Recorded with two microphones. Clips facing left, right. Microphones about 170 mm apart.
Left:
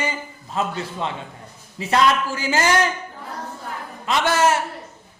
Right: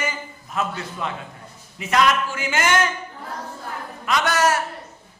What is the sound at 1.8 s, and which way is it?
A man's voice, 35° left (ahead or behind).